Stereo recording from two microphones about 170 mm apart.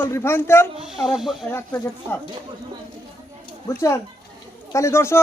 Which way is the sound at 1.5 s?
15° left (ahead or behind).